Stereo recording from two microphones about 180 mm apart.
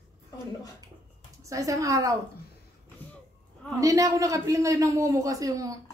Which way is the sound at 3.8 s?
20° right (ahead or behind).